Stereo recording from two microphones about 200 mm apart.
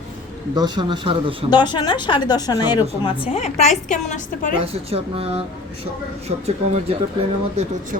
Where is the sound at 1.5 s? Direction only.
20° left (ahead or behind).